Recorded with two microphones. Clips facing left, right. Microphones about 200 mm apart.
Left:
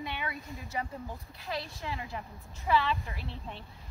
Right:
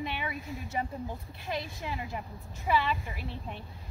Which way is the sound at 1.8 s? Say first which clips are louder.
Right 1 dB; 15° right (ahead or behind).